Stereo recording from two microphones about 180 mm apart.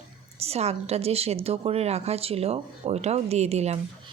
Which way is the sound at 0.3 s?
35° right (ahead or behind).